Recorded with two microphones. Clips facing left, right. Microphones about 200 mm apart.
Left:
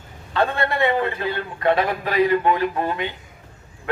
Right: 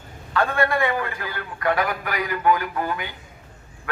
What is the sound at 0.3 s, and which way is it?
A man's voice, 25° left (ahead or behind).